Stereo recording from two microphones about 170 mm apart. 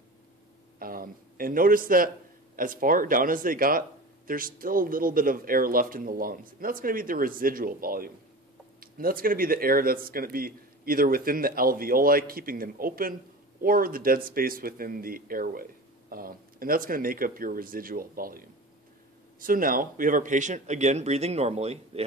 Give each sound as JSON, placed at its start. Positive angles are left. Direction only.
{"t": 0.7, "sound": "a man's voice", "side_deg": -60}